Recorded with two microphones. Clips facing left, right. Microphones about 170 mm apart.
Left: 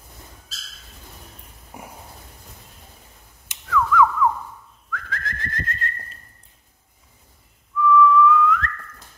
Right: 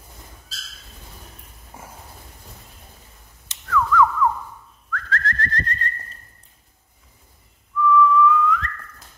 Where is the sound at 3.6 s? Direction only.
5° left (ahead or behind).